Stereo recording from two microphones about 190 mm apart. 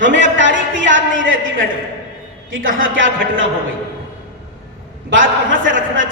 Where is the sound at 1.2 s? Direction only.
90° right.